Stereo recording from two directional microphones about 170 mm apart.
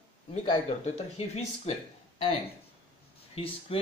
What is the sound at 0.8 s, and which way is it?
Speech, 35° left (ahead or behind).